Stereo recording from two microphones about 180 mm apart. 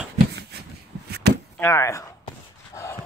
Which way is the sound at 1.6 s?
15° left (ahead or behind).